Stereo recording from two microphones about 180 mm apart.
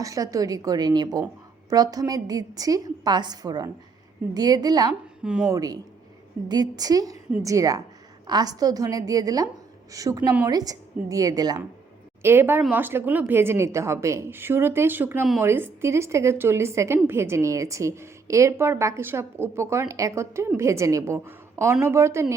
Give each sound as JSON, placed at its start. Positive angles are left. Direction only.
{"t": 0.0, "sound": "a woman's voice", "side_deg": -20}
{"t": 5.2, "sound": "speech", "side_deg": -5}
{"t": 5.5, "sound": "a woman's voice", "side_deg": -20}